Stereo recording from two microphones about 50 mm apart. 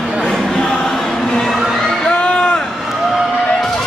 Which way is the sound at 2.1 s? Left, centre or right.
Left.